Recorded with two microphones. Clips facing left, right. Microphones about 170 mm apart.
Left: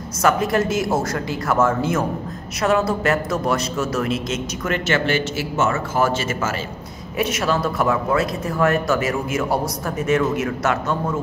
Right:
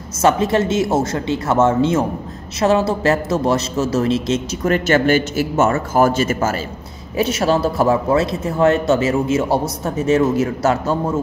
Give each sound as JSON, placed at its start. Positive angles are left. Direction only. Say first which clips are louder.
{"t": 0.2, "sound": "a man's voice", "louder": "right 3 dB", "side_deg": -25}